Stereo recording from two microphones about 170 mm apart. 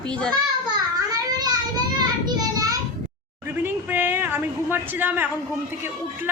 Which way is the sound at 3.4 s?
10° right (ahead or behind).